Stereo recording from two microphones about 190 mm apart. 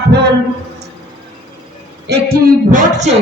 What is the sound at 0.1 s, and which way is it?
Speech, 60° right (ahead or behind).